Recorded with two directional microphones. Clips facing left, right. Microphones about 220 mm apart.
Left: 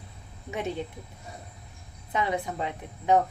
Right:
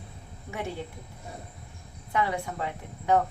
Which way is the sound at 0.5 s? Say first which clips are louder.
Left 3 dB; 20° left (ahead or behind).